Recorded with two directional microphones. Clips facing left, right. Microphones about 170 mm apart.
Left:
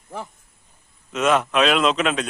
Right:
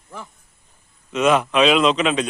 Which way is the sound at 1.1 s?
Centre (ahead or behind).